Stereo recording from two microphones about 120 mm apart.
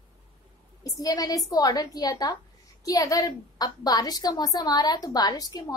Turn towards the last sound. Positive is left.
turn(degrees=30)  # may be behind; listen again after turning